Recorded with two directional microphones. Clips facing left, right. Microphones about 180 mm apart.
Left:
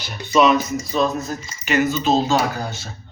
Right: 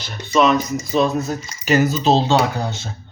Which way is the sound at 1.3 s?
35° right (ahead or behind).